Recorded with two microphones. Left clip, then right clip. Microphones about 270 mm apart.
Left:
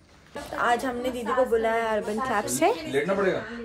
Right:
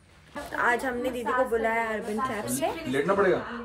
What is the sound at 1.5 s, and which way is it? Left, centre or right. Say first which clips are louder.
Speech: left 3 dB; centre.